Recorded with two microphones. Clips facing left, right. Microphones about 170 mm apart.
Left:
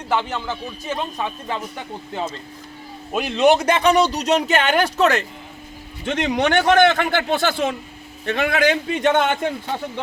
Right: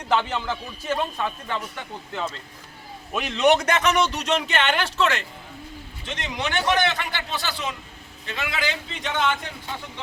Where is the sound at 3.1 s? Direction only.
30° left (ahead or behind).